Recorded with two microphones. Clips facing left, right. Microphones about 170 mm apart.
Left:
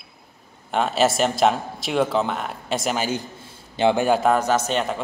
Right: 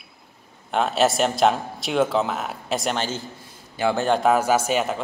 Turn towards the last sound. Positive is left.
turn(degrees=-5)  # may be behind; listen again after turning